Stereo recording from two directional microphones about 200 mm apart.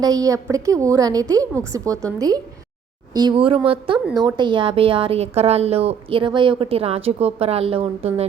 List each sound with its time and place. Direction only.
0.0 s a woman's voice: 20° right (ahead or behind)